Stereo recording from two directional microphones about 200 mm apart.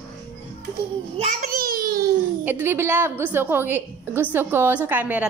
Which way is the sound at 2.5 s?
10° right (ahead or behind).